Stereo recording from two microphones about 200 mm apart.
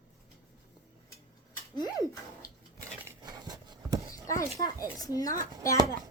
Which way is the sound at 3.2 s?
20° right (ahead or behind).